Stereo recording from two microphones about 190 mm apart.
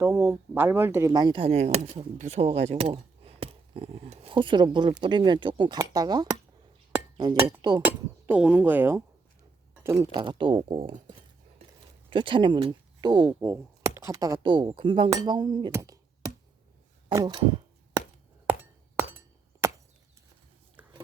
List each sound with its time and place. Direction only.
0.0 s speech: 15° right (ahead or behind)
7.9 s speech: 10° right (ahead or behind); by 11.1 s 35° right (ahead or behind)
12.1 s speech: 25° right (ahead or behind)
17.1 s speech: 20° right (ahead or behind)
19.6 s chop: 15° right (ahead or behind)
20.8 s a sound: 10° right (ahead or behind)